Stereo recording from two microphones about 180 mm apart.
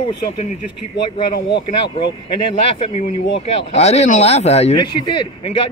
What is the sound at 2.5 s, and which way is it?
Speech, 35° left (ahead or behind).